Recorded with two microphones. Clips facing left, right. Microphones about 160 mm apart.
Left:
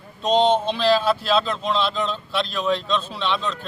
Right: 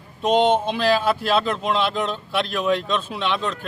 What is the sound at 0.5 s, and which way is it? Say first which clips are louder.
A man's voice: left 1 dB; 10° right (ahead or behind).